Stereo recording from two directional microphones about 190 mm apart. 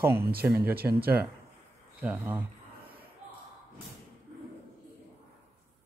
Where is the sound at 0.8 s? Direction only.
55° right (ahead or behind).